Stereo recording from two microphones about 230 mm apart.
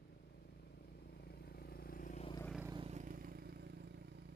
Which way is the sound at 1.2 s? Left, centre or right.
Left.